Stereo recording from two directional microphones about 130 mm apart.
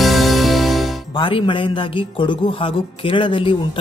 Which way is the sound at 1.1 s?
40° left (ahead or behind).